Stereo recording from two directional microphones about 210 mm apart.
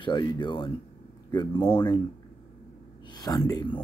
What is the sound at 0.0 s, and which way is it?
Speech, 20° left (ahead or behind).